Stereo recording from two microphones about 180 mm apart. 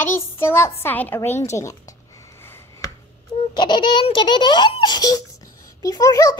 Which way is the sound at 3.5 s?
25° left (ahead or behind).